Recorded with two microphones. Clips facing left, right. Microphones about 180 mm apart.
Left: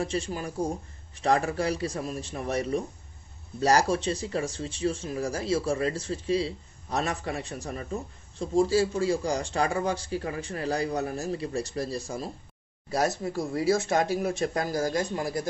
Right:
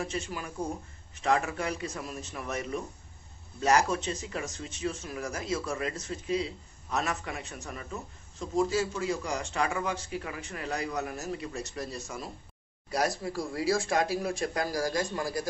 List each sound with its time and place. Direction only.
0.0 s speech: 30° left (ahead or behind)